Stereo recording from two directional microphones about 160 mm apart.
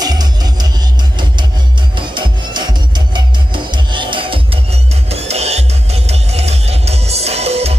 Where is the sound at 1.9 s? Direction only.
30° right (ahead or behind).